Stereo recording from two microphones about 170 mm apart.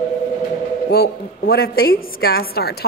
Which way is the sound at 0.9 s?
65° left (ahead or behind).